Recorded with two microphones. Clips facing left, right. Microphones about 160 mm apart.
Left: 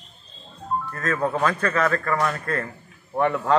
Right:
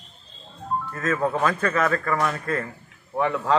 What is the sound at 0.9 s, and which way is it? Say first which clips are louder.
Speech: right 1 dB; 5° right (ahead or behind).